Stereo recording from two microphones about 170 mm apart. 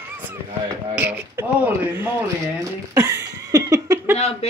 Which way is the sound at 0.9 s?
10° right (ahead or behind).